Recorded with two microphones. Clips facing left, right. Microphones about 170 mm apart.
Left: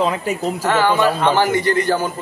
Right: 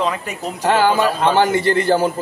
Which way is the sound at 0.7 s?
30° right (ahead or behind).